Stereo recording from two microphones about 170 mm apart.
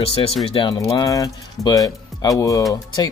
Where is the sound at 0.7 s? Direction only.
20° left (ahead or behind).